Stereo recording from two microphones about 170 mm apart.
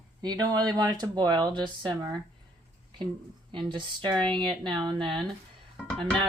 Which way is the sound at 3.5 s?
30° right (ahead or behind).